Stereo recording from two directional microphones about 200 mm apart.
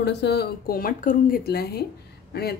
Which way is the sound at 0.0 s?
55° left (ahead or behind).